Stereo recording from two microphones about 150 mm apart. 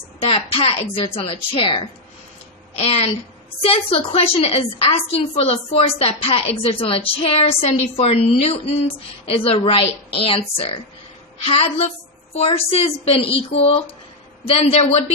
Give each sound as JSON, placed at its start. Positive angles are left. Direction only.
{"t": 0.2, "sound": "a woman's voice", "side_deg": 35}